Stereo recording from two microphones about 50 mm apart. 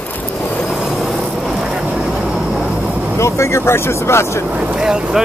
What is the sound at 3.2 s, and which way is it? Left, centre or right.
Speech, left.